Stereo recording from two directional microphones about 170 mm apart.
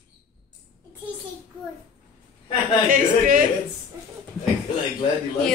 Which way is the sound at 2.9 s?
50° right (ahead or behind).